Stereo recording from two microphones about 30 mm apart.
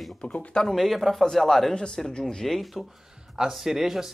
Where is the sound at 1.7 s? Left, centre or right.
Left.